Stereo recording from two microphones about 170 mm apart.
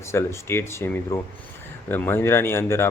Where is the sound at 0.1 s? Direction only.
15° left (ahead or behind).